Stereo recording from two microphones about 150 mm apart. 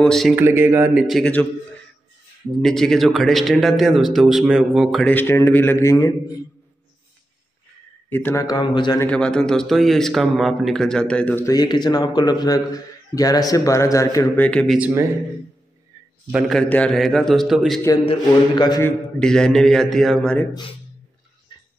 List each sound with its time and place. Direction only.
0.0 s speech: centre (ahead or behind)
0.4 s speech: 15° right (ahead or behind)
1.0 s speech: 5° left (ahead or behind)
2.6 s speech: centre (ahead or behind)
5.0 s a man's voice: 15° left (ahead or behind)
8.1 s a man's voice: 15° left (ahead or behind)
8.5 s a man's voice: 30° left (ahead or behind)
9.0 s speech: 5° left (ahead or behind)
11.5 s a man's voice: 30° left (ahead or behind)
14.4 s a man's voice: 5° left (ahead or behind)
16.3 s speech: 5° right (ahead or behind)
16.5 s speech: 10° left (ahead or behind)
18.8 s speech: 10° left (ahead or behind)
21.5 s music: 30° left (ahead or behind)